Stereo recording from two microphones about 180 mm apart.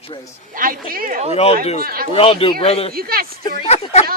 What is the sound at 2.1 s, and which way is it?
Speech, 30° left (ahead or behind).